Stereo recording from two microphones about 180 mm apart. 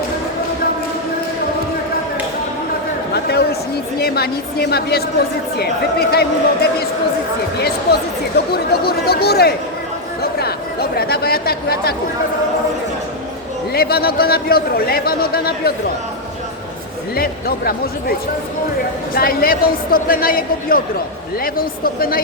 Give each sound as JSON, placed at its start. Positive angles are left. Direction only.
{"t": 3.1, "sound": "a sound", "side_deg": 65}
{"t": 3.9, "sound": "speech", "side_deg": 60}
{"t": 8.5, "sound": "speech", "side_deg": 60}
{"t": 10.3, "sound": "chatter", "side_deg": 60}
{"t": 13.7, "sound": "speech", "side_deg": 60}
{"t": 19.1, "sound": "speech", "side_deg": 55}